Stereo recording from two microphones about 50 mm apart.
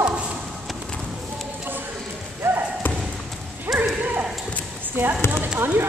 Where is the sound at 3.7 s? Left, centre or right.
Right.